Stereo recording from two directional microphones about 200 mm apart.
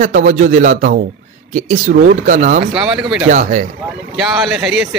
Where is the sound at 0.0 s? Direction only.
40° right (ahead or behind).